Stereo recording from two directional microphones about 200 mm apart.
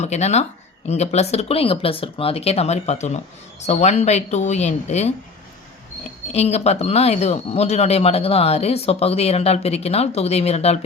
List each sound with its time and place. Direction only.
0.0 s speech: 35° left (ahead or behind)
6.3 s speech: 30° left (ahead or behind)